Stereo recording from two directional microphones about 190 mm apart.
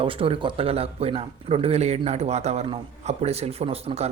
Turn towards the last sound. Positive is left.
turn(degrees=-30)  # may be behind; listen again after turning